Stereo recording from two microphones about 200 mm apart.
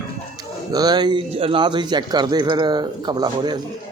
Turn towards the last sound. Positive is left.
turn(degrees=-20)  # may be behind; listen again after turning